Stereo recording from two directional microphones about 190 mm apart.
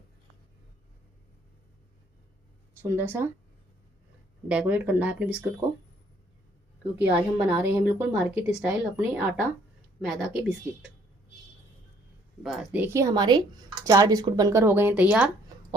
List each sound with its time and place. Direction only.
2.9 s speech: 10° right (ahead or behind)
4.4 s speech: 10° right (ahead or behind)
7.1 s speech: 10° right (ahead or behind)
12.4 s speech: centre (ahead or behind)